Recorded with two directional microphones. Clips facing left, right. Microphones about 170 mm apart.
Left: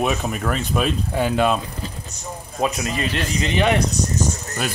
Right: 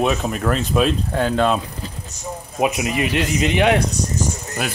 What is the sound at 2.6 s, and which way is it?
Speech, 15° right (ahead or behind).